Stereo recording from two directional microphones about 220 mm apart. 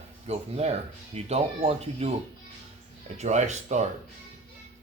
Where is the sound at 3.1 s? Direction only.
30° right (ahead or behind).